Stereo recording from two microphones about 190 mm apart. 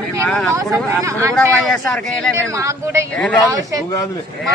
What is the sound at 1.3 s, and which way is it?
Speech, centre (ahead or behind).